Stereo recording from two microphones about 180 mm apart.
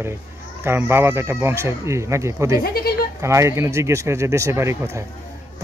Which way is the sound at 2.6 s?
60° left (ahead or behind).